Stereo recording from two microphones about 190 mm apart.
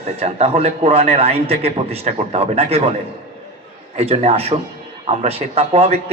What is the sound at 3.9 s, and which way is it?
A man's voice, 30° right (ahead or behind).